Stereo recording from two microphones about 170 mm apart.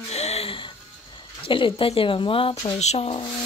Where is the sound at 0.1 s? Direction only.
40° left (ahead or behind).